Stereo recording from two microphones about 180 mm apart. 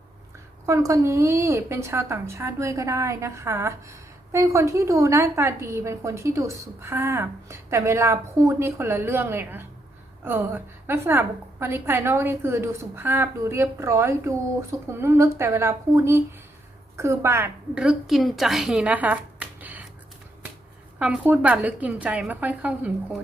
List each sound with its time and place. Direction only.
0.6 s a woman's voice: 15° right (ahead or behind)
21.0 s a woman's voice: 5° right (ahead or behind)